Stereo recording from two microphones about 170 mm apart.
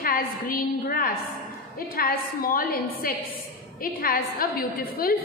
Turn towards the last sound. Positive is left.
turn(degrees=60)  # may be behind; listen again after turning